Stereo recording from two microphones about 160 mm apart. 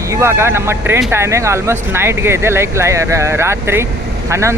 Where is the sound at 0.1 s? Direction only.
15° right (ahead or behind).